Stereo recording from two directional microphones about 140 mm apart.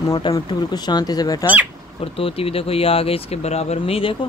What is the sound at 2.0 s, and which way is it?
Speech, 45° left (ahead or behind).